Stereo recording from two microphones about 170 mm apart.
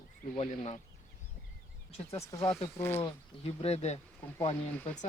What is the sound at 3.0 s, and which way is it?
Speech, 35° left (ahead or behind).